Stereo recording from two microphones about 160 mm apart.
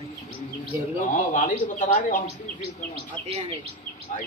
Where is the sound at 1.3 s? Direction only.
55° left (ahead or behind).